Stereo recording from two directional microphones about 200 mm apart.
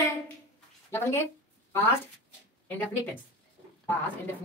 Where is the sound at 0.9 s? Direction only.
10° left (ahead or behind).